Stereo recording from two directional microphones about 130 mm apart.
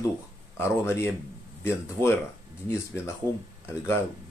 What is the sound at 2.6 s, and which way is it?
Speech, 20° left (ahead or behind).